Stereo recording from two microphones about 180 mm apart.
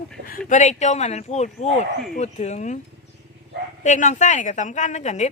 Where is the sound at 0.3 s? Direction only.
50° left (ahead or behind).